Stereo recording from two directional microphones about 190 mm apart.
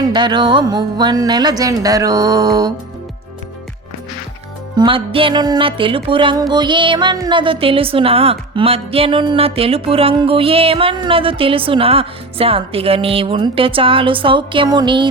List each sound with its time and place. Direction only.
0.0 s a woman's voice: 25° right (ahead or behind)
4.8 s a woman's voice: 30° right (ahead or behind)